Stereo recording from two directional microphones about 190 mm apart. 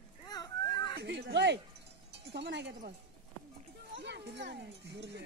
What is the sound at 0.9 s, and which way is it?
Speech, 60° right (ahead or behind).